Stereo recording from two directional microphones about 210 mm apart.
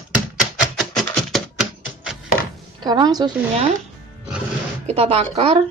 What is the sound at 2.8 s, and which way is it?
Speech, 20° right (ahead or behind).